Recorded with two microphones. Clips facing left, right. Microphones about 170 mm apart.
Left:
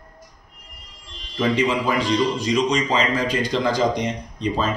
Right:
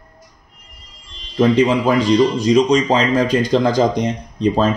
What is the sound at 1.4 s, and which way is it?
Speech, 40° right (ahead or behind).